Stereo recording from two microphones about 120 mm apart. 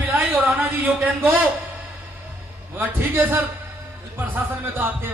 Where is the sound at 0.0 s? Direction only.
15° right (ahead or behind).